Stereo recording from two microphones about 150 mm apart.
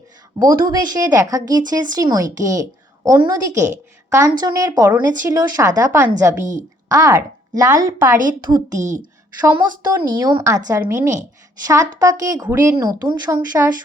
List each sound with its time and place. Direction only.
0.3 s a woman's voice: 30° right (ahead or behind)
6.4 s a woman's voice: 55° right (ahead or behind)
6.8 s a woman's voice: 20° right (ahead or behind)
8.4 s a woman's voice: 30° right (ahead or behind)
9.4 s a woman's voice: 10° right (ahead or behind)
10.2 s a woman's voice: 25° right (ahead or behind)